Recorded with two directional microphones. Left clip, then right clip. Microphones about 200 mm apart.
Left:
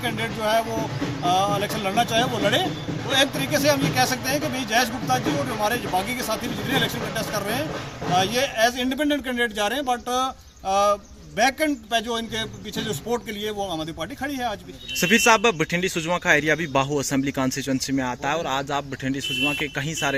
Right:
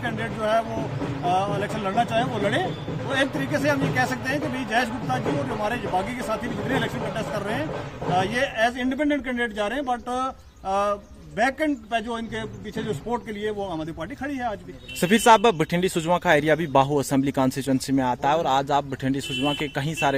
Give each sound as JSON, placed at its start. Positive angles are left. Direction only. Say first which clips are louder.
{"t": 0.0, "sound": "speech", "louder": "left 2 dB", "side_deg": 0}
{"t": 15.0, "sound": "speech", "louder": "right 1 dB", "side_deg": -20}